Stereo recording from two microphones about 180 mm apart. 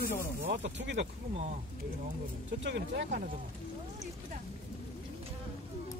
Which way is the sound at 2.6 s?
75° right (ahead or behind).